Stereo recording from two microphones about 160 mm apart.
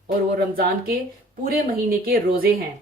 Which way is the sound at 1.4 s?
70° right (ahead or behind).